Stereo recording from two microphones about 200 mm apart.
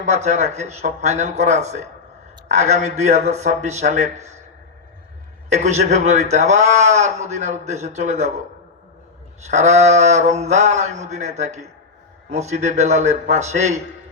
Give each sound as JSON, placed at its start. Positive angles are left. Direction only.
{"t": 0.1, "sound": "a man's voice", "side_deg": -35}
{"t": 5.5, "sound": "a man's voice", "side_deg": -35}
{"t": 9.4, "sound": "a man's voice", "side_deg": -35}